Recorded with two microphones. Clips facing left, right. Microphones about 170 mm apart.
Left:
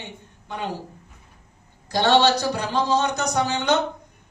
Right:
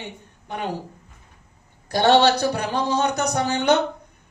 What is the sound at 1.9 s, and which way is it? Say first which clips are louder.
A man's voice: right 2 dB; 55° right (ahead or behind).